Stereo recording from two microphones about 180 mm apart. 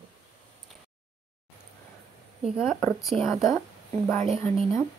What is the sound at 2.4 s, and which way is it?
Speech, centre (ahead or behind).